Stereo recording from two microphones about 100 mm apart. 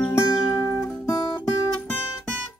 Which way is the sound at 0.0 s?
30° left (ahead or behind).